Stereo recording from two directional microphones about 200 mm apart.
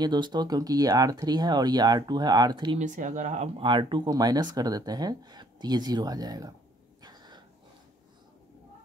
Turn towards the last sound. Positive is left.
turn(degrees=-20)  # may be behind; listen again after turning